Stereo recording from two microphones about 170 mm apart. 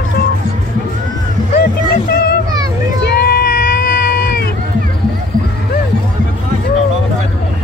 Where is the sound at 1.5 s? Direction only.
70° left (ahead or behind).